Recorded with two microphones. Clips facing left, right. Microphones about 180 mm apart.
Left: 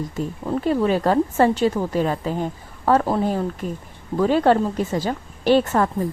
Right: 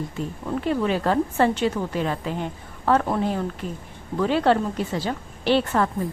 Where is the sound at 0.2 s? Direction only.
40° left (ahead or behind).